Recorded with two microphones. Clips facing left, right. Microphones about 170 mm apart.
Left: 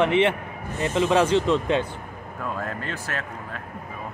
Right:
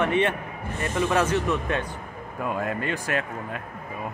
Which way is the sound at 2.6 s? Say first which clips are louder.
Right 4 dB; 10° right (ahead or behind).